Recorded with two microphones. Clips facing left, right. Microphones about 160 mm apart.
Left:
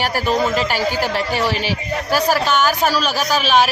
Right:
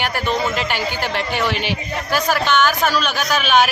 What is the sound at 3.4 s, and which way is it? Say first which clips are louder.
Speech: even; centre (ahead or behind).